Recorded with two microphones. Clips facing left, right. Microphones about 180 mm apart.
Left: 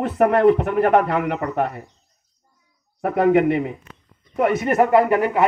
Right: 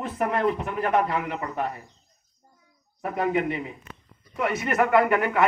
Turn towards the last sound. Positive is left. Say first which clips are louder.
# left 5 dB
turn(degrees=35)  # may be behind; listen again after turning